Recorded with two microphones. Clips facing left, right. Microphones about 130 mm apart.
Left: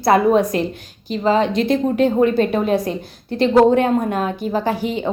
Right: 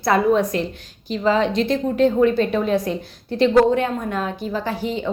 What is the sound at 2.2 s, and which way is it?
A woman's voice, 50° left (ahead or behind).